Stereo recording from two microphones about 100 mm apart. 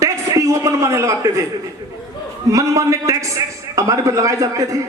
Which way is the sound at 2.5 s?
30° right (ahead or behind).